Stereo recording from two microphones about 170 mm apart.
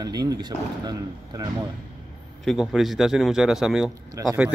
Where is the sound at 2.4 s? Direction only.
Centre (ahead or behind).